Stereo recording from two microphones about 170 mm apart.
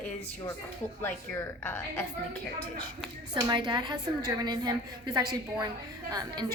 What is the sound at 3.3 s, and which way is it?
A woman's voice, 25° right (ahead or behind).